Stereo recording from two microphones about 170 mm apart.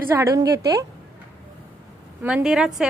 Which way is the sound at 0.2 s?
20° right (ahead or behind).